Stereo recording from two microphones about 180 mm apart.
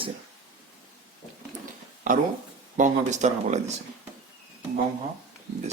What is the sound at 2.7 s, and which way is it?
Speech, 40° right (ahead or behind).